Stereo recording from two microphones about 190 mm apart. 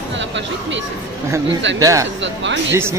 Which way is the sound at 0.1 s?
70° right (ahead or behind).